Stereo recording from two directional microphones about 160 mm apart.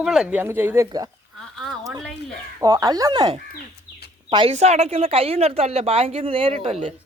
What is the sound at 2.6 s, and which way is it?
Speech, 25° right (ahead or behind).